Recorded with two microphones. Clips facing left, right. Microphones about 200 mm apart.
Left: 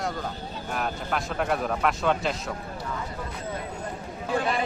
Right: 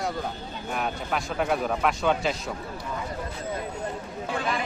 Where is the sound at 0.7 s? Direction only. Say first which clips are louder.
Even; centre (ahead or behind).